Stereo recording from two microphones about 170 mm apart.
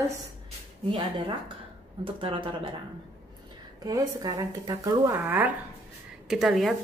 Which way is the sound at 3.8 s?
20° right (ahead or behind).